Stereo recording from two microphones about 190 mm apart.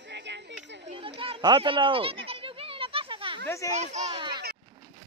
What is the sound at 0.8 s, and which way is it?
Children playing, 30° right (ahead or behind).